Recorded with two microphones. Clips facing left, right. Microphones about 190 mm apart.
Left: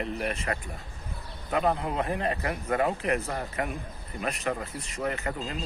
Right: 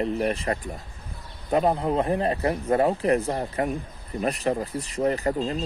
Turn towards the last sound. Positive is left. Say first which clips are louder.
# right 8 dB
turn(degrees=-35)  # may be behind; listen again after turning